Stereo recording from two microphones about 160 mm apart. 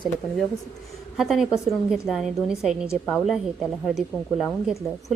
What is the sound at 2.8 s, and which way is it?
Speech, 15° left (ahead or behind).